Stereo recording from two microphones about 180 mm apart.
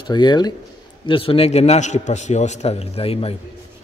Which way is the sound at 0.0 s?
25° left (ahead or behind).